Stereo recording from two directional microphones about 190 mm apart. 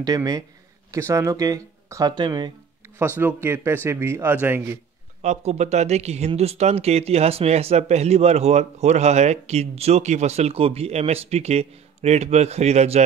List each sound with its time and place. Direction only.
0.0 s a man's voice: 20° right (ahead or behind)
3.0 s speech: 10° right (ahead or behind)
5.2 s speech: 35° right (ahead or behind)